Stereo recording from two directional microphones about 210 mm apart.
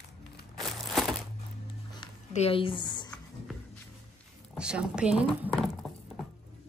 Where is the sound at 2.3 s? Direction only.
30° left (ahead or behind).